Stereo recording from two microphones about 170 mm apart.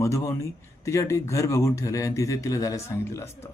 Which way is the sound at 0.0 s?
15° left (ahead or behind).